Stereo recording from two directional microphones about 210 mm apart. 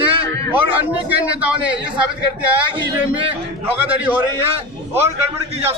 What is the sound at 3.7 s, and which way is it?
Speech, 10° right (ahead or behind).